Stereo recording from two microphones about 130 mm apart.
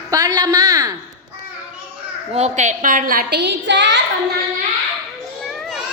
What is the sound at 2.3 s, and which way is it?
Speech, 60° right (ahead or behind).